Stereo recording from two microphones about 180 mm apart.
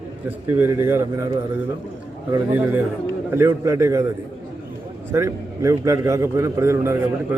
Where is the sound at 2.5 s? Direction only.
10° right (ahead or behind).